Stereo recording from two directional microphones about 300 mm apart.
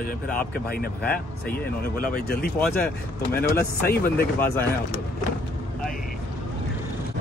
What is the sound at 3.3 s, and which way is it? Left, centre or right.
Speech, centre.